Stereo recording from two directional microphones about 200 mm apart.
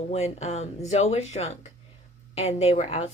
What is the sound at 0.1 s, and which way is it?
A woman's voice, 35° left (ahead or behind).